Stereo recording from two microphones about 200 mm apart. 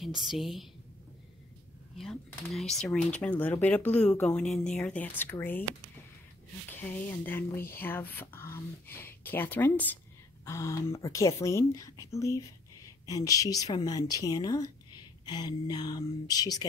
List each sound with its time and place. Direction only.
0.0 s a woman's voice: centre (ahead or behind)
2.0 s speech: centre (ahead or behind)
6.8 s a woman's voice: 10° left (ahead or behind)